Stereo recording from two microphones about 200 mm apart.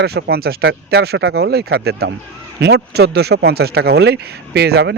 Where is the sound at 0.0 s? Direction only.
55° right (ahead or behind).